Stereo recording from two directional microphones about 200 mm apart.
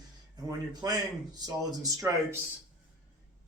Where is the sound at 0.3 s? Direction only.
20° right (ahead or behind).